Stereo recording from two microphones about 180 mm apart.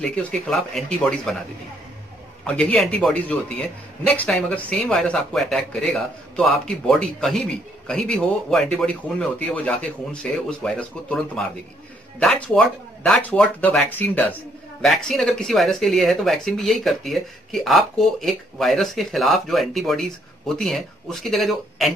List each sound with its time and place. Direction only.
0.0 s speech: 5° left (ahead or behind)
2.4 s speech: 5° left (ahead or behind)